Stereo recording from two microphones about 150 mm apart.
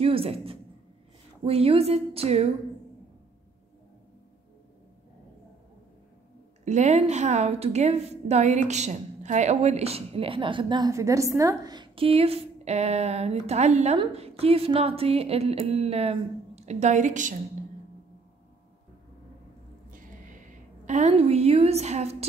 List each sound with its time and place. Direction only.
0.0 s a woman's voice: 40° right (ahead or behind)
6.6 s a woman's voice: 50° right (ahead or behind); by 10.9 s 30° right (ahead or behind)
10.9 s a woman's voice: 20° right (ahead or behind); by 17.4 s 55° right (ahead or behind)
19.9 s a sound: 60° right (ahead or behind)
21.1 s a woman's voice: 45° right (ahead or behind)